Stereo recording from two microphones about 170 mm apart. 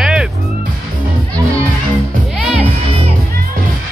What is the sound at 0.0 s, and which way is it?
Music, 5° right (ahead or behind).